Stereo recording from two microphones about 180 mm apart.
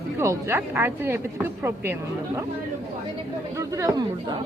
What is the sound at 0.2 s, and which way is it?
A woman's voice, 15° right (ahead or behind).